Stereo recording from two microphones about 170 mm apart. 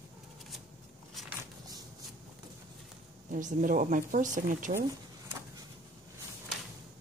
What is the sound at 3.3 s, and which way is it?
Speech, 50° right (ahead or behind).